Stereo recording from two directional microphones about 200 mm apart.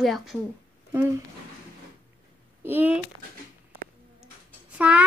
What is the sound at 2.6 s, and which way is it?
Speech, 10° right (ahead or behind).